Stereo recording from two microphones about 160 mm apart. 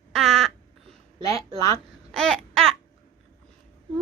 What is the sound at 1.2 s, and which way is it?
Speech, 20° left (ahead or behind).